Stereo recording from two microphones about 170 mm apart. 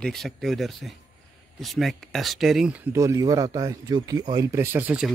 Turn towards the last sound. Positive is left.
turn(degrees=-5)  # may be behind; listen again after turning